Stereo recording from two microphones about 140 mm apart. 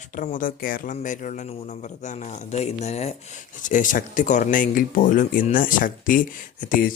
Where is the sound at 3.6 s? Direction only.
65° left (ahead or behind).